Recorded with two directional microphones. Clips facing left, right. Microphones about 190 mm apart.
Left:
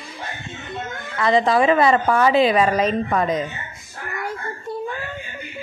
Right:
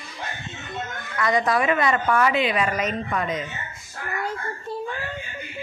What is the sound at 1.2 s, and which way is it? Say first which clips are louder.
Speech: left 5 dB; 25° left (ahead or behind).